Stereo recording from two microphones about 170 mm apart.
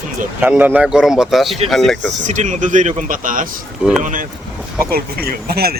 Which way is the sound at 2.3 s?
45° right (ahead or behind).